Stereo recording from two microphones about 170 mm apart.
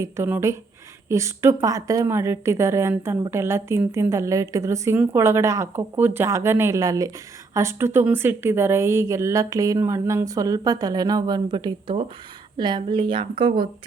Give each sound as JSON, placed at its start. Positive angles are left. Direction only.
{"t": 0.0, "sound": "a woman's voice", "side_deg": -15}